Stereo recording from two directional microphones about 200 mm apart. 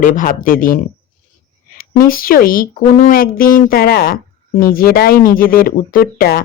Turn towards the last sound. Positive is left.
turn(degrees=50)  # may be behind; listen again after turning